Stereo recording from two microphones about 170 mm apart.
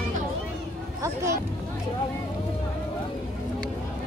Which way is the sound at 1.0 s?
15° right (ahead or behind).